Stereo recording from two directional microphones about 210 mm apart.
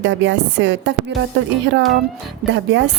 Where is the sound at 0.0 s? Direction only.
60° right (ahead or behind).